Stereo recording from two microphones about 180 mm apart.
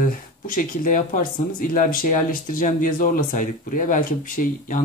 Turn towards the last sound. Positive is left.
turn(degrees=50)  # may be behind; listen again after turning